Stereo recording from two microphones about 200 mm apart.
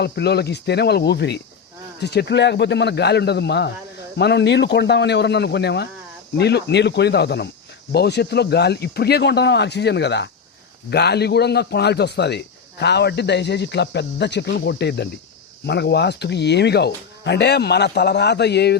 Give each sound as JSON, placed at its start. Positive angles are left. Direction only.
{"t": 0.0, "sound": "a man's voice", "side_deg": 55}